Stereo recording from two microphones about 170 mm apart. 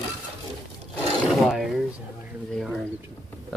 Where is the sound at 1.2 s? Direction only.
Centre (ahead or behind).